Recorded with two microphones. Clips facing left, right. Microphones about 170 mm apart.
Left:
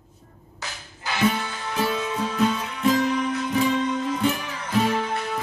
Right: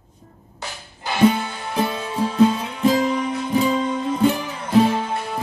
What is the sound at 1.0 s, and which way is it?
Music, 30° right (ahead or behind).